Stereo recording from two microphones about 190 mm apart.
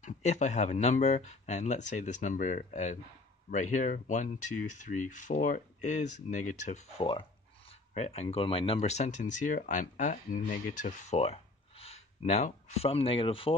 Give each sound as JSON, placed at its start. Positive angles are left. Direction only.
{"t": 0.0, "sound": "speech", "side_deg": 35}